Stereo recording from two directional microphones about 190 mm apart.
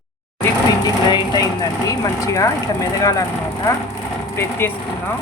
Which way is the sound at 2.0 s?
15° left (ahead or behind).